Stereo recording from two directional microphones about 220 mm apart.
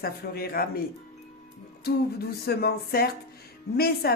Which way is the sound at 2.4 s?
45° left (ahead or behind).